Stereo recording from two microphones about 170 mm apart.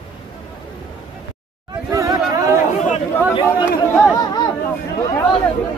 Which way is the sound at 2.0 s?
20° right (ahead or behind).